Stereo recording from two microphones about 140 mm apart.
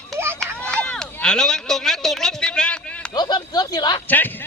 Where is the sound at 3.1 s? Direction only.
30° left (ahead or behind).